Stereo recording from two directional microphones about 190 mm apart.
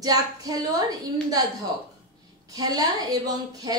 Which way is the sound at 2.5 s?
20° right (ahead or behind).